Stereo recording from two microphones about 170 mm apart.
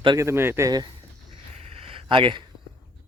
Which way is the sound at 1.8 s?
30° right (ahead or behind).